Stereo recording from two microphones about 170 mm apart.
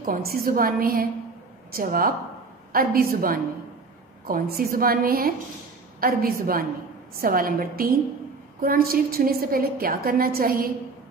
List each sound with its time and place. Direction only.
0.0 s a woman's voice: 55° right (ahead or behind)